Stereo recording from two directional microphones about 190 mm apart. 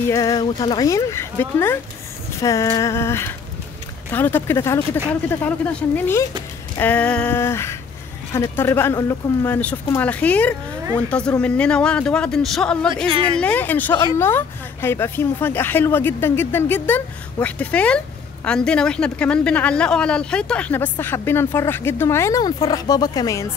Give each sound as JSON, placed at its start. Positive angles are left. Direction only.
{"t": 0.1, "sound": "speech", "side_deg": 15}